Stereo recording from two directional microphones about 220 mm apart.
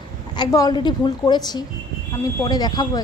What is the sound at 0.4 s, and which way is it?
A woman's voice, 15° left (ahead or behind).